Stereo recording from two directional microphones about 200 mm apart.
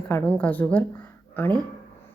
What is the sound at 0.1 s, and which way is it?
A woman's voice, 10° left (ahead or behind).